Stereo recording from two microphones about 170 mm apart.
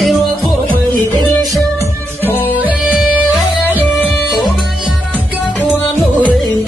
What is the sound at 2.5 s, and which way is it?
Music, 10° right (ahead or behind).